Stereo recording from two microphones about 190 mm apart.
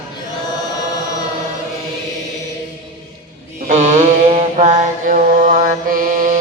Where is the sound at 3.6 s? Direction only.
40° right (ahead or behind).